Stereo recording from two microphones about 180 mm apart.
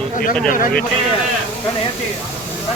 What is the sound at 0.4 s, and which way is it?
Speech, 50° left (ahead or behind).